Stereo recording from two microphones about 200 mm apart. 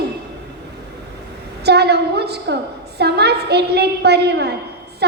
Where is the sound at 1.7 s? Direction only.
55° right (ahead or behind).